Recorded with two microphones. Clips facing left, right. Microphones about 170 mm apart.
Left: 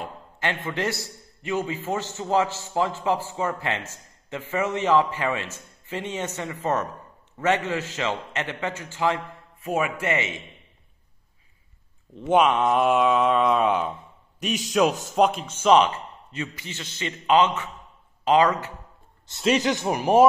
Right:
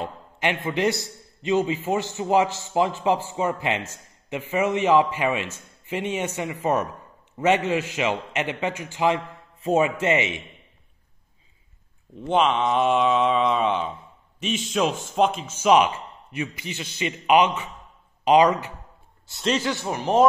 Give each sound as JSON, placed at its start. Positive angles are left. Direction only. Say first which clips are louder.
{"t": 0.4, "sound": "a man's voice", "louder": "right 4 dB", "side_deg": -15}
{"t": 9.6, "sound": "speech", "louder": "right 5 dB", "side_deg": -25}
{"t": 12.2, "sound": "a sound", "louder": "left 2 dB", "side_deg": 5}
{"t": 14.4, "sound": "a man's voice", "louder": "left 2 dB", "side_deg": 0}
{"t": 19.3, "sound": "speech", "louder": "left 2 dB", "side_deg": 5}
{"t": 19.6, "sound": "speech", "louder": "left 3 dB", "side_deg": 20}